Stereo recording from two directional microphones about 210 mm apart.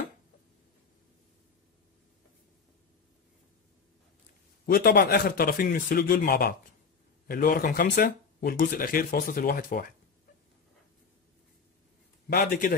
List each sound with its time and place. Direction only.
4.6 s speech: 45° left (ahead or behind)
12.3 s a man's voice: 45° left (ahead or behind)